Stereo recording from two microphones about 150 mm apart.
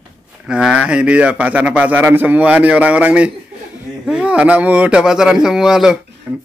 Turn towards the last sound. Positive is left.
turn(degrees=-10)  # may be behind; listen again after turning